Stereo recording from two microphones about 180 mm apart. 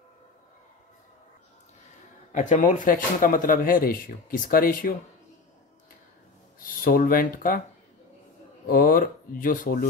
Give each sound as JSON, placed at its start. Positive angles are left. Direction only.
{"t": 2.3, "sound": "speech", "side_deg": 45}
{"t": 6.6, "sound": "speech", "side_deg": 50}
{"t": 8.6, "sound": "speech", "side_deg": 50}